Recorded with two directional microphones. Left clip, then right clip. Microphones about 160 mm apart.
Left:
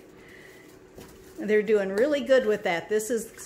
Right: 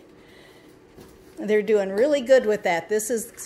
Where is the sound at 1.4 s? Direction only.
20° right (ahead or behind).